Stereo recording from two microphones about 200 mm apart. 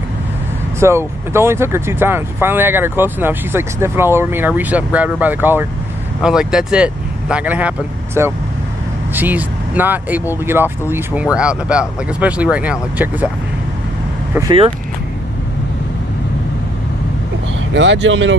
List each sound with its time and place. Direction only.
0.7 s speech: 15° right (ahead or behind)
17.7 s speech: 70° right (ahead or behind)